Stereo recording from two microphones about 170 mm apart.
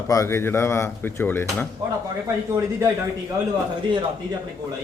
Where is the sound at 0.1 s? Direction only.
15° left (ahead or behind).